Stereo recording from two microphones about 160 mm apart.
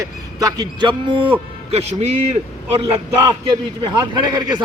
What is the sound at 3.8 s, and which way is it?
Speech, 25° right (ahead or behind).